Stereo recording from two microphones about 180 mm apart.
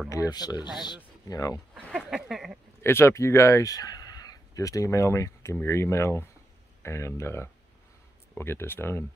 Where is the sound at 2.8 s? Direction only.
15° left (ahead or behind).